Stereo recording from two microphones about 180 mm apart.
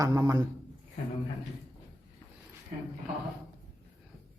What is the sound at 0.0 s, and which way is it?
Speech, 20° right (ahead or behind).